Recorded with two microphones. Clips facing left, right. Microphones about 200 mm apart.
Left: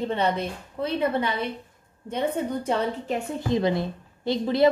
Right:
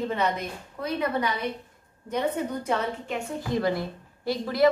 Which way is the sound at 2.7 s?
35° left (ahead or behind).